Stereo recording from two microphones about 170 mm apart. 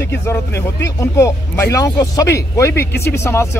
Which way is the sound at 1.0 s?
20° left (ahead or behind).